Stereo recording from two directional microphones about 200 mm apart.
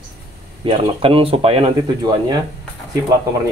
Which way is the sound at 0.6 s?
30° right (ahead or behind).